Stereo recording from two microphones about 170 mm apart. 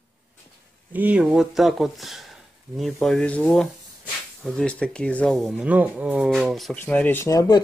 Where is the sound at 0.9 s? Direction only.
10° right (ahead or behind).